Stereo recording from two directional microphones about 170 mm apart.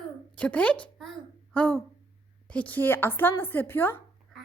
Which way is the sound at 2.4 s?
10° left (ahead or behind).